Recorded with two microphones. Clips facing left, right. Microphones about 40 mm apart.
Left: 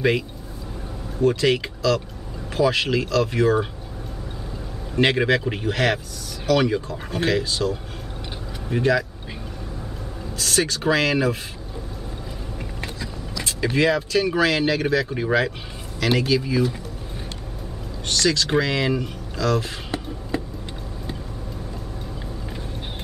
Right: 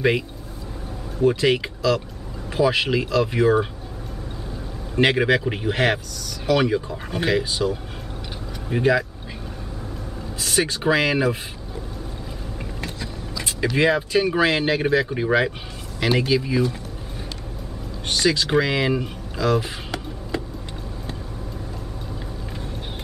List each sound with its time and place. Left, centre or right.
1.1 s speech: centre
4.9 s speech: centre
10.4 s speech: centre
13.4 s vehicle: centre
13.7 s speech: centre
15.0 s speech: centre
18.0 s speech: centre